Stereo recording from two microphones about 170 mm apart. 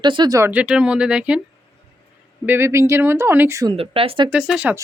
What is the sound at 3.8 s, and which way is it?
Speech, 35° right (ahead or behind).